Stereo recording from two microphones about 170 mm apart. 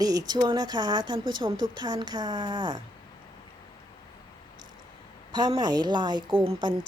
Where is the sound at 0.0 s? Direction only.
20° right (ahead or behind).